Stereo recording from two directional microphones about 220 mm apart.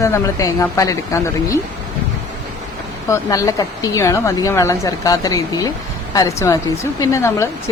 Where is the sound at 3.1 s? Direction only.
15° left (ahead or behind).